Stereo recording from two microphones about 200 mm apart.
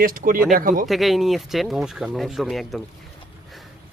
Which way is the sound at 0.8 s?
Centre (ahead or behind).